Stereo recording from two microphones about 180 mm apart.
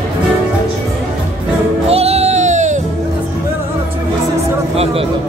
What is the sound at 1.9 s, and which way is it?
Music, 35° right (ahead or behind).